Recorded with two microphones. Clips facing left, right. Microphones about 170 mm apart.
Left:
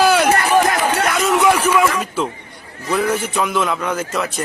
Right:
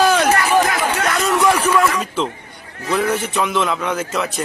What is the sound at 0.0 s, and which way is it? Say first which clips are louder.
Run: left 1 dB; 5° left (ahead or behind).